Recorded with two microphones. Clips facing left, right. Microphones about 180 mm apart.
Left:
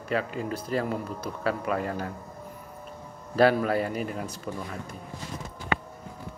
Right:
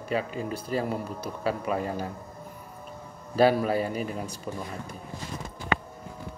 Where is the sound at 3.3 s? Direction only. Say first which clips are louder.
Even; 10° right (ahead or behind).